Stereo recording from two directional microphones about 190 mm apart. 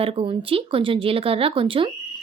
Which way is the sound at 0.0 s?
30° right (ahead or behind).